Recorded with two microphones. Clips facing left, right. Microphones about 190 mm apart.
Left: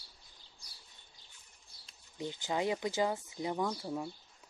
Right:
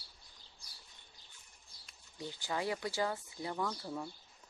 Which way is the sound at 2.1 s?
20° left (ahead or behind).